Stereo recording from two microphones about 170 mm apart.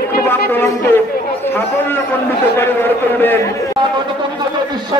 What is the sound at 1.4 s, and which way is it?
A man's voice, 15° left (ahead or behind).